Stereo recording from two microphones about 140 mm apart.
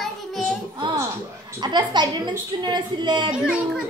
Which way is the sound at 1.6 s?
30° right (ahead or behind).